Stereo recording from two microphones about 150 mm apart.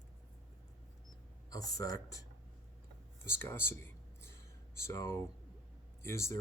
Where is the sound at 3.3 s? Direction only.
15° left (ahead or behind).